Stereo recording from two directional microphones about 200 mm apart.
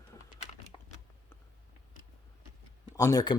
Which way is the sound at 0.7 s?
25° left (ahead or behind).